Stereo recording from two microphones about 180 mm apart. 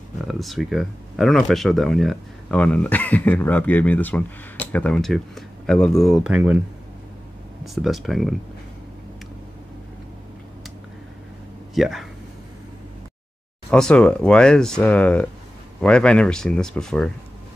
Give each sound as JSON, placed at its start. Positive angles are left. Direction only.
{"t": 0.3, "sound": "speech", "side_deg": 0}
{"t": 7.6, "sound": "speech", "side_deg": 0}
{"t": 11.7, "sound": "speech", "side_deg": 0}
{"t": 13.7, "sound": "speech", "side_deg": 5}